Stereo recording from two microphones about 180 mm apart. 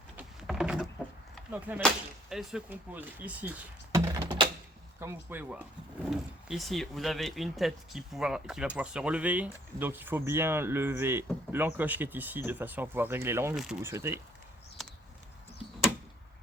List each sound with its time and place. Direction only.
0.2 s a sound: 5° right (ahead or behind)
1.5 s speech: 10° right (ahead or behind)
3.9 s typing: 20° right (ahead or behind)
4.9 s speech: 15° right (ahead or behind)